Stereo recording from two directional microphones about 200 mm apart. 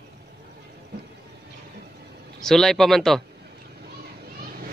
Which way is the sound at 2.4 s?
Centre (ahead or behind).